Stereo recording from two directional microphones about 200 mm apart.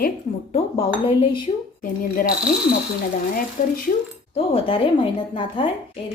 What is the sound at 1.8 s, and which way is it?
Speech, 45° left (ahead or behind).